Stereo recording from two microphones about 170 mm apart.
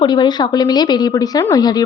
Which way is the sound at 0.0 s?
25° left (ahead or behind).